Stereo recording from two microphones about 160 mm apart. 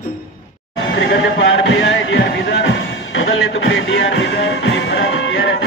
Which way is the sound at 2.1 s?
90° left.